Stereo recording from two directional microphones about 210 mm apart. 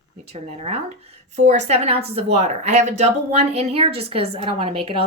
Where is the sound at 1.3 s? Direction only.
35° right (ahead or behind).